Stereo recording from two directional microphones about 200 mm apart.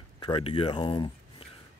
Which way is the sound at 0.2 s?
25° left (ahead or behind).